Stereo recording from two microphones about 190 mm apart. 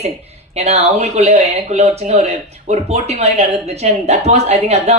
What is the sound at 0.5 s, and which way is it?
Speech, 35° right (ahead or behind).